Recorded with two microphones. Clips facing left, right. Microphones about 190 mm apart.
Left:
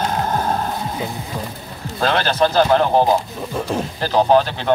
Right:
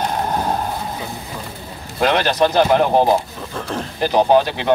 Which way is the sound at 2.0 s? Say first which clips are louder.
Right 1 dB; 15° right (ahead or behind).